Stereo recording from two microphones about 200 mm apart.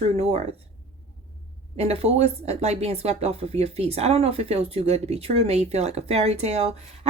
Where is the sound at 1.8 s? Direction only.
30° right (ahead or behind).